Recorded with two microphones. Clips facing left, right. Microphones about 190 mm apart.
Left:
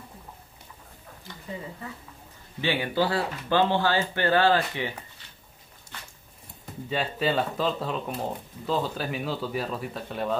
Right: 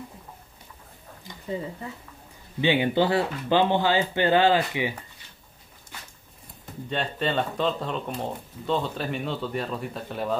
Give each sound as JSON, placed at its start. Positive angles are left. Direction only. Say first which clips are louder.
{"t": 1.3, "sound": "a sound", "louder": "even", "side_deg": -15}
{"t": 2.6, "sound": "speech", "louder": "right 4 dB", "side_deg": -20}
{"t": 6.6, "sound": "speech", "louder": "even", "side_deg": 5}